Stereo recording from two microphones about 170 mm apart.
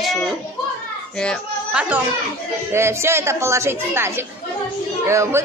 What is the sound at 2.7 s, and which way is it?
Speech, 15° right (ahead or behind).